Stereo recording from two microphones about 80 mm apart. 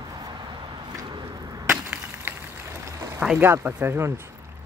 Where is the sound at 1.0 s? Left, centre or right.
Right.